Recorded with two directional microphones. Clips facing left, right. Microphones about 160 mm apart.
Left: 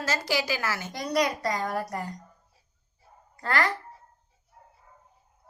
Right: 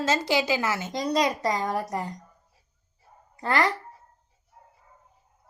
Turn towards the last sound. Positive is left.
turn(degrees=-20)  # may be behind; listen again after turning